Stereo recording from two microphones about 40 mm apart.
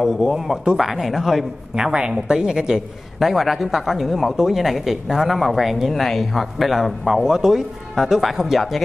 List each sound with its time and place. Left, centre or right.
0.0 s speech: centre
1.9 s a woman's voice: right
3.2 s speech: centre